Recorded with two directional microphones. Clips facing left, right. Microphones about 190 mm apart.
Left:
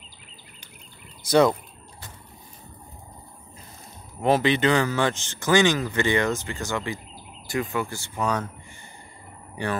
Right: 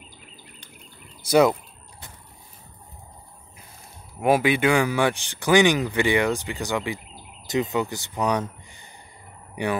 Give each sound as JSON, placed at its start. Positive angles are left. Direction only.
{"t": 1.3, "sound": "a sound", "side_deg": -10}
{"t": 4.2, "sound": "speech", "side_deg": -10}
{"t": 9.6, "sound": "speech", "side_deg": -15}